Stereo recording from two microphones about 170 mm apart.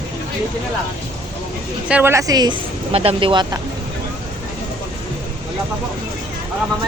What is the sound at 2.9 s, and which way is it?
Speech, 35° right (ahead or behind).